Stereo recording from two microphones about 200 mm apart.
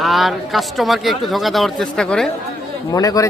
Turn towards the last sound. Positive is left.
turn(degrees=15)  # may be behind; listen again after turning